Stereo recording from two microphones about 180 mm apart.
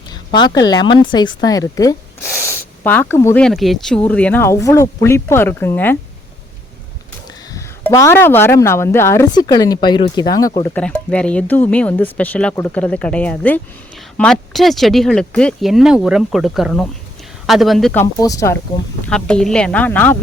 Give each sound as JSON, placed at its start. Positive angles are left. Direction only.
{"t": 0.1, "sound": "speech", "side_deg": 25}
{"t": 3.4, "sound": "speech", "side_deg": 0}
{"t": 7.5, "sound": "speech", "side_deg": 15}
{"t": 10.8, "sound": "speech", "side_deg": 5}
{"t": 17.9, "sound": "speech", "side_deg": 15}
{"t": 19.0, "sound": "speech", "side_deg": 5}